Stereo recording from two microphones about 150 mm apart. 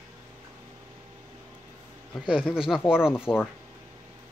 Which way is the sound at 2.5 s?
5° right (ahead or behind).